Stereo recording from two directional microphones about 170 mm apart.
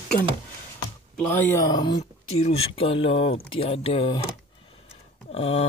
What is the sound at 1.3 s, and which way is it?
Speech, 10° left (ahead or behind).